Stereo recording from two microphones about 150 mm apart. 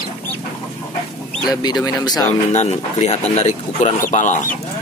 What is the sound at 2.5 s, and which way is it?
Speech, 50° left (ahead or behind).